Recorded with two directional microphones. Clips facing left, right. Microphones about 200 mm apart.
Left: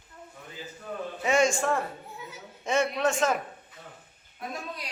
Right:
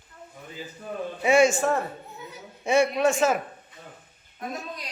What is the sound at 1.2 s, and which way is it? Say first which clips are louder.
Speech: right 5 dB; 10° right (ahead or behind).